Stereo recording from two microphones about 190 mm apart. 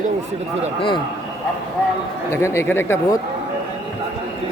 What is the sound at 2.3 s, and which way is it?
Speech, 15° left (ahead or behind).